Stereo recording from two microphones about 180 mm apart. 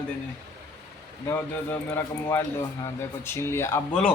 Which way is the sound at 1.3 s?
15° left (ahead or behind).